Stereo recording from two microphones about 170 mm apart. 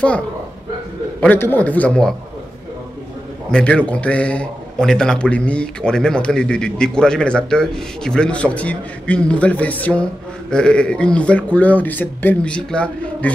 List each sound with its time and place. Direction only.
1.2 s a man's voice: 10° left (ahead or behind)
3.5 s a man's voice: 5° left (ahead or behind)